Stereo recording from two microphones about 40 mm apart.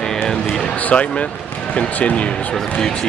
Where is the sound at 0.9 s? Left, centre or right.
Left.